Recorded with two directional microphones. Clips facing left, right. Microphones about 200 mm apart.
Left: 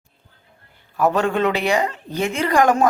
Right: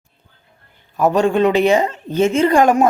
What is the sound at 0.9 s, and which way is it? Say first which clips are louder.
A woman's voice: right 4 dB; 20° right (ahead or behind).